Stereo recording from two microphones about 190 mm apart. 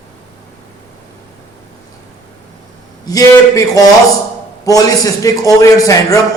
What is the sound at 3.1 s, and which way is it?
Speech, 20° left (ahead or behind).